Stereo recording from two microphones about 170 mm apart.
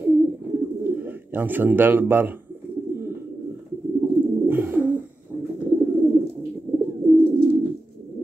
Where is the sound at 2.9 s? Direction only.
15° right (ahead or behind).